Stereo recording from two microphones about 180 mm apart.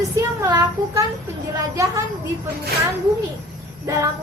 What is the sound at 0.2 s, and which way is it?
Child singing, 20° right (ahead or behind).